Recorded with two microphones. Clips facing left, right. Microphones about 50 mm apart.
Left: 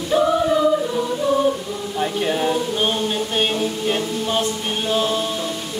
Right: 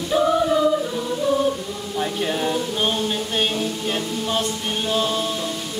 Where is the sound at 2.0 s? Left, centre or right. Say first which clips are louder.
Left 3 dB; centre.